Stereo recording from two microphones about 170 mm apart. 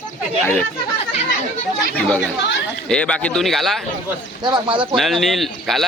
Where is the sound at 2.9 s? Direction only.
5° left (ahead or behind).